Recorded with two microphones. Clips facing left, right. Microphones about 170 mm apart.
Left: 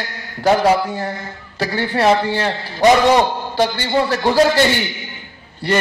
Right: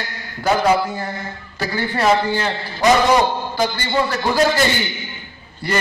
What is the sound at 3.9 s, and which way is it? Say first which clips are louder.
Speech: left 3 dB; 35° left (ahead or behind).